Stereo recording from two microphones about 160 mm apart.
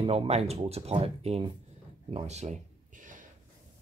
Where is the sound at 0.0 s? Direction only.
40° right (ahead or behind).